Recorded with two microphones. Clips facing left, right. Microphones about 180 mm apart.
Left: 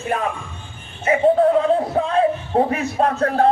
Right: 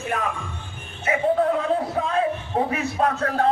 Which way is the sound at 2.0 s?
35° left (ahead or behind).